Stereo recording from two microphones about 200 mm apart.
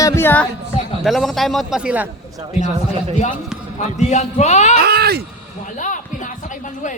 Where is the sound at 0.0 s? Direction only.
10° left (ahead or behind).